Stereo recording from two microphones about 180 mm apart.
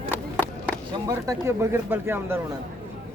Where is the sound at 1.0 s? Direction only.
20° right (ahead or behind).